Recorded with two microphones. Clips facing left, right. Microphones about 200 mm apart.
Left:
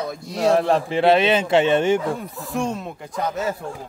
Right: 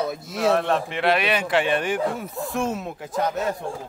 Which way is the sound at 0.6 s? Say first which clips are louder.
Left 4 dB; 35° left (ahead or behind).